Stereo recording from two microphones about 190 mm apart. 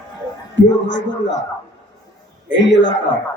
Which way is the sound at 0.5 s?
70° left (ahead or behind).